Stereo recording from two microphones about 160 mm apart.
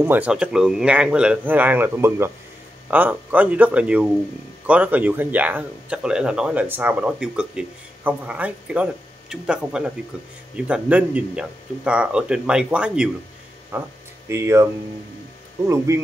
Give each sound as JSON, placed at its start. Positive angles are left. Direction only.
{"t": 0.0, "sound": "speech", "side_deg": -10}